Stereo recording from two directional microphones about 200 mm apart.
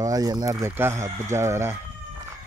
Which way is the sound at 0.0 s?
20° right (ahead or behind).